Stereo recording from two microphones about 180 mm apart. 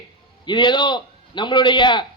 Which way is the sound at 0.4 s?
25° left (ahead or behind).